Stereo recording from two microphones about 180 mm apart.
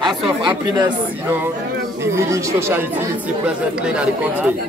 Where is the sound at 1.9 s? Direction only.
15° right (ahead or behind).